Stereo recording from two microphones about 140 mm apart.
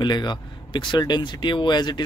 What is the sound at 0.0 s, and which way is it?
Speech, 30° left (ahead or behind).